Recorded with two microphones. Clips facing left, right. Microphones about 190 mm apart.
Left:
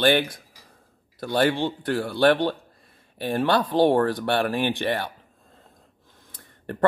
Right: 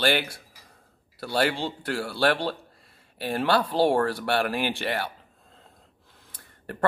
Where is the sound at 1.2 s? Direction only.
20° left (ahead or behind).